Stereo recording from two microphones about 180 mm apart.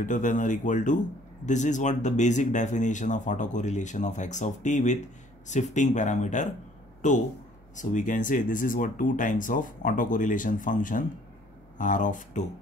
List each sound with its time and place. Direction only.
0.0 s speech: 45° left (ahead or behind)
7.7 s speech: 45° left (ahead or behind)